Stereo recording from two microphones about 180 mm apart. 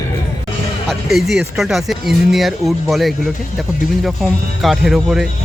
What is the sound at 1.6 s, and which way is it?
Speech, centre (ahead or behind).